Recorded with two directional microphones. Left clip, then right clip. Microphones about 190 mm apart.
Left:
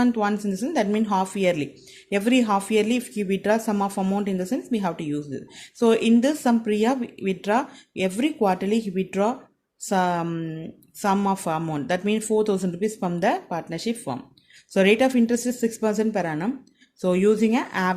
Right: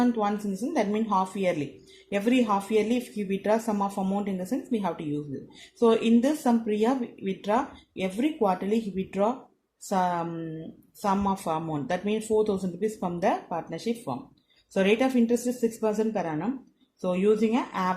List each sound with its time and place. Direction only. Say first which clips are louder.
0.0 s speech: left 3 dB; 50° left (ahead or behind)